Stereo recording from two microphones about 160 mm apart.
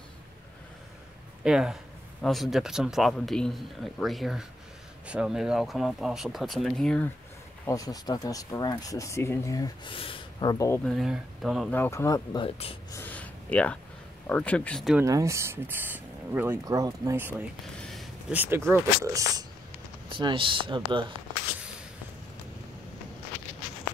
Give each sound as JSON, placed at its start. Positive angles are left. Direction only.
{"t": 1.4, "sound": "speech", "side_deg": -5}
{"t": 7.6, "sound": "speech", "side_deg": 20}
{"t": 9.9, "sound": "speech", "side_deg": 35}
{"t": 10.9, "sound": "speech", "side_deg": 0}
{"t": 11.7, "sound": "speech", "side_deg": 15}
{"t": 12.4, "sound": "speech", "side_deg": 35}
{"t": 12.9, "sound": "a sound", "side_deg": 10}
{"t": 14.2, "sound": "speech", "side_deg": 10}
{"t": 15.0, "sound": "speech", "side_deg": -20}
{"t": 17.7, "sound": "a sound", "side_deg": 5}
{"t": 18.3, "sound": "speech", "side_deg": -10}
{"t": 20.1, "sound": "speech", "side_deg": -30}